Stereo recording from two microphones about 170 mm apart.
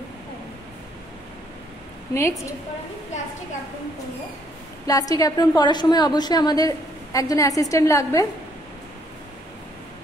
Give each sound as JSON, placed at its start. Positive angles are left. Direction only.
{"t": 2.1, "sound": "a woman's voice", "side_deg": 15}
{"t": 4.8, "sound": "a woman's voice", "side_deg": 20}